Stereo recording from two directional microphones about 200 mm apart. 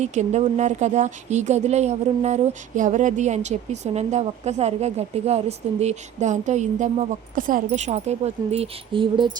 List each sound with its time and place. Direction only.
0.0 s speech: 35° right (ahead or behind)